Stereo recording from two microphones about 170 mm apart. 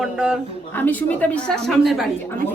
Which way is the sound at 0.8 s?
10° left (ahead or behind).